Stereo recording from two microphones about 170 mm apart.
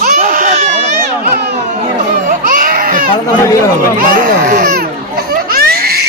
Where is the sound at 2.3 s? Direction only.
55° right (ahead or behind).